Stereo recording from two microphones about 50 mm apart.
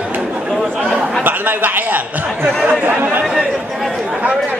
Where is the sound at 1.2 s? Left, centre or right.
Right.